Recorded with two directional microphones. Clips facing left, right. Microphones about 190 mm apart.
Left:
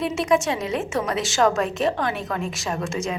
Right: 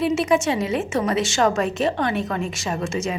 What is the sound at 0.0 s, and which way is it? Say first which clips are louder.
A woman's voice: right 2 dB; 5° right (ahead or behind).